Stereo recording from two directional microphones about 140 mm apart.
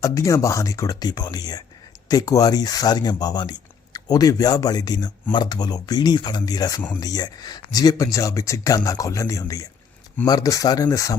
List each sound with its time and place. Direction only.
0.0 s speech: 20° left (ahead or behind)